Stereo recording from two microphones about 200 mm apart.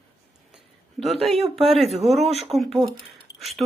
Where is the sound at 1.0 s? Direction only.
Centre (ahead or behind).